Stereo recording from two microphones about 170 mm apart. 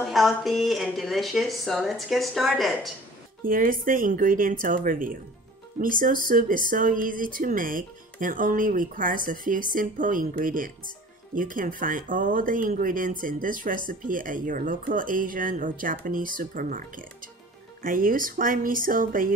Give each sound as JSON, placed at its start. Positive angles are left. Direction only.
{"t": 0.0, "sound": "speech", "side_deg": 0}
{"t": 3.4, "sound": "speech", "side_deg": -55}